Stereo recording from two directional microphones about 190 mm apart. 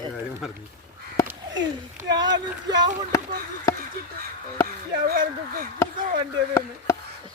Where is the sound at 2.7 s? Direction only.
20° right (ahead or behind).